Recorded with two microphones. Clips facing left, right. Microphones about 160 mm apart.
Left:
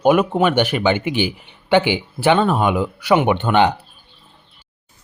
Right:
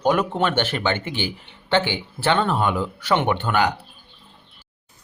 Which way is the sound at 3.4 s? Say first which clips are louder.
Left 5 dB; 20° left (ahead or behind).